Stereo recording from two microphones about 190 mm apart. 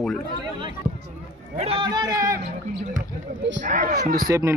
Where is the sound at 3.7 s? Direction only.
40° right (ahead or behind).